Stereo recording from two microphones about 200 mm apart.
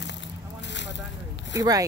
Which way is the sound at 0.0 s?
60° left (ahead or behind).